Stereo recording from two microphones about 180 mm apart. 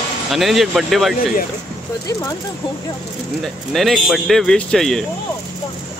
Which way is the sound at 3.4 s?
Centre (ahead or behind).